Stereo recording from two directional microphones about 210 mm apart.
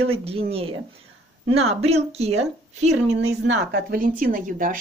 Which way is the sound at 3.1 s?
55° right (ahead or behind).